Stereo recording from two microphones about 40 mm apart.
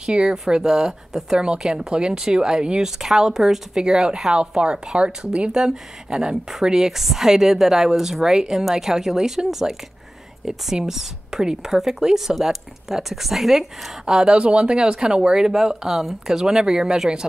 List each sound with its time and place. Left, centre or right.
0.0 s a woman's voice: centre
14.3 s a woman's voice: right